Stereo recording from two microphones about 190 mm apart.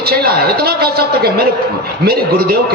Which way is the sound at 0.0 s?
55° right (ahead or behind).